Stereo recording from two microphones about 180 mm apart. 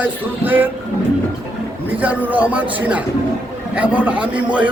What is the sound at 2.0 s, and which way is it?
A man's voice, 10° right (ahead or behind).